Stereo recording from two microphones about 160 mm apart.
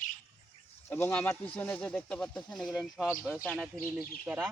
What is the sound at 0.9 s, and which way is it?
Speech, 15° left (ahead or behind).